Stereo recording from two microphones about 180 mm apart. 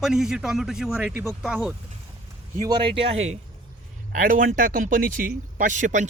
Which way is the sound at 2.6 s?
25° right (ahead or behind).